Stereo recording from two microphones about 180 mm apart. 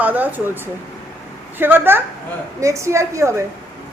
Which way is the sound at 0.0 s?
10° right (ahead or behind).